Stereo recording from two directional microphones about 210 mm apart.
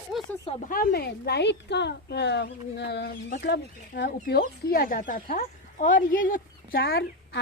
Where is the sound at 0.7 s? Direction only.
45° left (ahead or behind).